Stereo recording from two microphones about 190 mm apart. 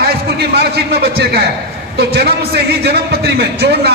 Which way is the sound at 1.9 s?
60° right (ahead or behind).